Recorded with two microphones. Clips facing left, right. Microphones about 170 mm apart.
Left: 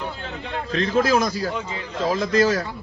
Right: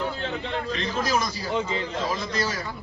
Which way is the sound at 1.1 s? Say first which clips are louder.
Left 4 dB; 50° left (ahead or behind).